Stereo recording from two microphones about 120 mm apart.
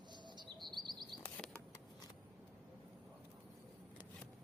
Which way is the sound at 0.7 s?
35° right (ahead or behind).